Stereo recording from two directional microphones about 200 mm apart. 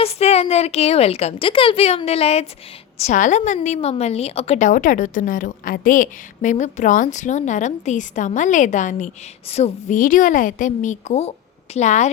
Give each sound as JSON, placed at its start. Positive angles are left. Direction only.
{"t": 0.0, "sound": "a woman's voice", "side_deg": 30}